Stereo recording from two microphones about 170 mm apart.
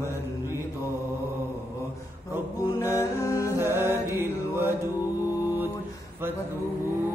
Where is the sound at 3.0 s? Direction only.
20° left (ahead or behind).